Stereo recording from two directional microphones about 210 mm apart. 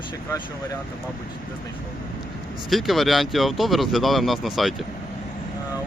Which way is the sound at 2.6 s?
Centre (ahead or behind).